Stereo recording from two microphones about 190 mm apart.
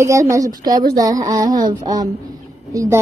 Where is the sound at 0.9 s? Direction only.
20° right (ahead or behind).